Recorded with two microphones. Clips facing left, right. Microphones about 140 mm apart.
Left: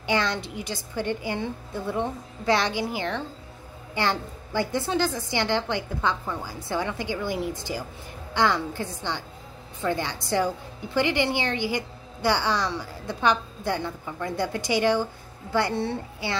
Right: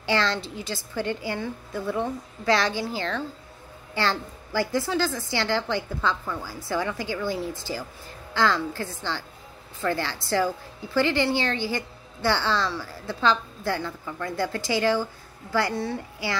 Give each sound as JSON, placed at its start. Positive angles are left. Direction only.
{"t": 0.0, "sound": "a woman's voice", "side_deg": 15}